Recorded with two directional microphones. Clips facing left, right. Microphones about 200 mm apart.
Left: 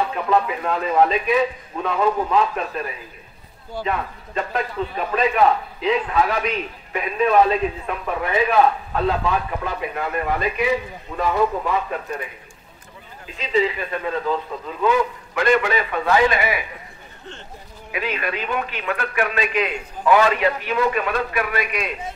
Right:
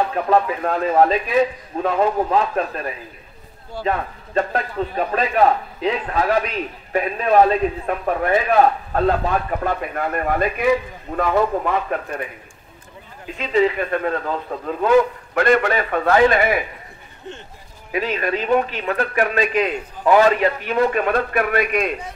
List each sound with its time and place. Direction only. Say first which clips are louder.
0.1 s a man's voice: right 2 dB; 40° right (ahead or behind)
3.8 s a man's voice: right 3 dB; 40° right (ahead or behind)
13.4 s a man's voice: right 3 dB; 50° right (ahead or behind)
17.9 s a man's voice: right 4 dB; 40° right (ahead or behind)